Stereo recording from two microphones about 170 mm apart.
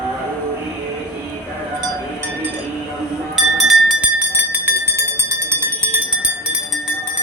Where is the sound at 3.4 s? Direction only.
Centre (ahead or behind).